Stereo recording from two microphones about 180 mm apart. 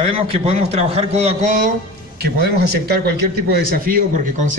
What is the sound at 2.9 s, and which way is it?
A man's voice, 60° right (ahead or behind).